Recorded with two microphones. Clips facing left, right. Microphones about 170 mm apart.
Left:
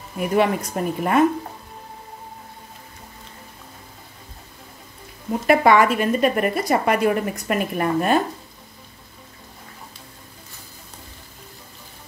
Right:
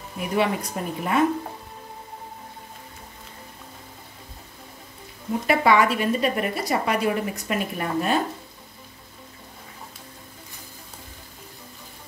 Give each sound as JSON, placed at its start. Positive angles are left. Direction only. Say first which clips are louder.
{"t": 0.4, "sound": "a woman's voice", "louder": "left 3 dB", "side_deg": 50}
{"t": 5.5, "sound": "a woman's voice", "louder": "left 4 dB", "side_deg": 50}